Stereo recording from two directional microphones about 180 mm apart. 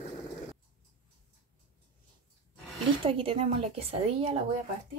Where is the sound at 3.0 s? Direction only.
30° right (ahead or behind).